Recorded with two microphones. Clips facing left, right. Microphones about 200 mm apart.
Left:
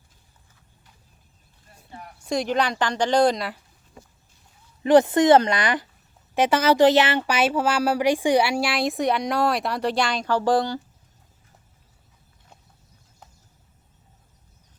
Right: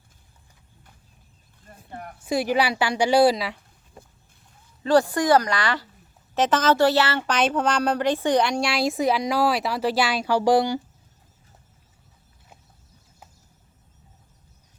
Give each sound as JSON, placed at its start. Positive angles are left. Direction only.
{"t": 1.6, "sound": "a sound", "side_deg": -55}
{"t": 2.2, "sound": "a woman's voice", "side_deg": -5}
{"t": 4.8, "sound": "a woman's voice", "side_deg": 20}